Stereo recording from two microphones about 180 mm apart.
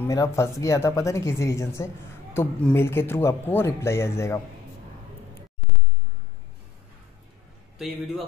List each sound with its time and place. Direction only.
0.0 s speech: 15° left (ahead or behind)